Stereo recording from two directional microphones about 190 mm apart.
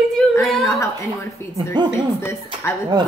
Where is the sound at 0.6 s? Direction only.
15° left (ahead or behind).